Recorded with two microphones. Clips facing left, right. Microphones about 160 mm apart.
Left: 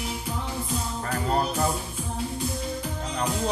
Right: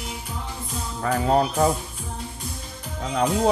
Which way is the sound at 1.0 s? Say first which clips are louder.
Right 7 dB; 75° right (ahead or behind).